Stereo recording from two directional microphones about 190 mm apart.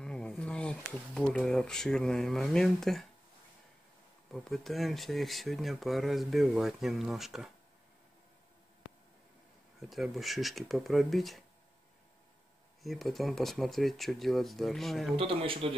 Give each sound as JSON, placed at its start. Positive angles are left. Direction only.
{"t": 0.0, "sound": "speech", "side_deg": 5}
{"t": 4.3, "sound": "speech", "side_deg": 0}
{"t": 9.8, "sound": "speech", "side_deg": 0}
{"t": 12.8, "sound": "speech", "side_deg": 0}
{"t": 15.1, "sound": "speech", "side_deg": -30}